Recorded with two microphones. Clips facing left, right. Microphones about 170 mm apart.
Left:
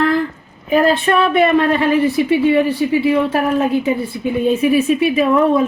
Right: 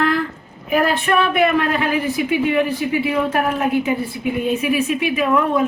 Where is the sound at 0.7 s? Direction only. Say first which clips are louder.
Left 4 dB; 30° left (ahead or behind).